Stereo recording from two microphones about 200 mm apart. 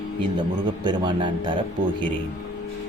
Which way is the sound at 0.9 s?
25° right (ahead or behind).